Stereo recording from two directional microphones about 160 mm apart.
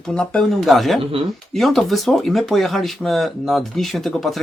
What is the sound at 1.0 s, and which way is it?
Speech, 35° right (ahead or behind).